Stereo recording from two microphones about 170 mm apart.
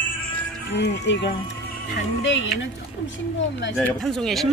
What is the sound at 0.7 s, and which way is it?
Speech, 90° left.